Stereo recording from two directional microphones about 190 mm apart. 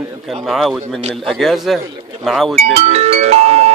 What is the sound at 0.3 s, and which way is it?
Speech, centre (ahead or behind).